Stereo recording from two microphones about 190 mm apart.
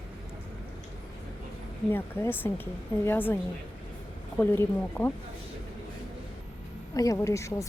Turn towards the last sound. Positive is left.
turn(degrees=15)  # may be behind; listen again after turning